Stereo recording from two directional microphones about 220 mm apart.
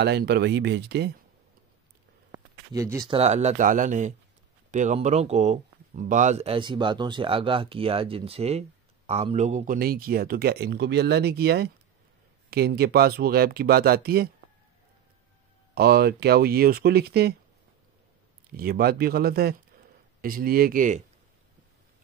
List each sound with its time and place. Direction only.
0.0 s speech: 50° right (ahead or behind)
2.3 s a sound: 15° right (ahead or behind)
3.2 s speech: 30° right (ahead or behind)
15.7 s speech: 45° right (ahead or behind)
18.5 s speech: 40° right (ahead or behind)